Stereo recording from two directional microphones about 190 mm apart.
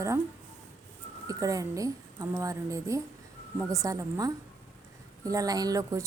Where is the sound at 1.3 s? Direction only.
20° right (ahead or behind).